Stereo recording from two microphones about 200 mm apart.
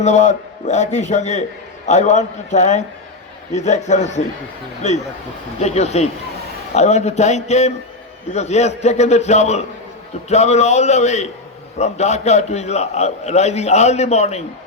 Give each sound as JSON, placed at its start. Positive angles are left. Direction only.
{"t": 0.0, "sound": "a man's voice", "side_deg": 35}